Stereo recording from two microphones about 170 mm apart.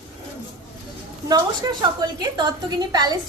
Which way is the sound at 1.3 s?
25° right (ahead or behind).